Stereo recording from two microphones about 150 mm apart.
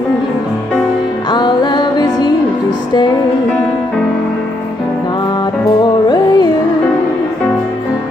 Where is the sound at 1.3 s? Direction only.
30° left (ahead or behind).